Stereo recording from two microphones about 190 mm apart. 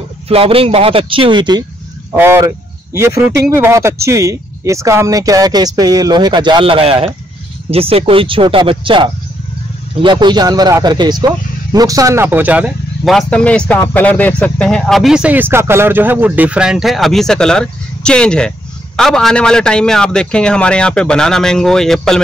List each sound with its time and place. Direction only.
0.3 s speech: 30° right (ahead or behind)
2.1 s speech: 15° right (ahead or behind); by 22.2 s centre (ahead or behind)